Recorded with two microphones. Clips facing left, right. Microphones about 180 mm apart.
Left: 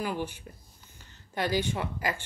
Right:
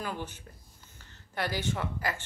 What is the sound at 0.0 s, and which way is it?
Speech, 10° left (ahead or behind).